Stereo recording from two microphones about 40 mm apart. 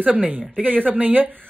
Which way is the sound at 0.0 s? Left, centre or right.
Right.